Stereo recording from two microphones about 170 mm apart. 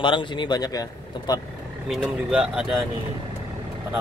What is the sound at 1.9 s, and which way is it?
Speech, 5° right (ahead or behind).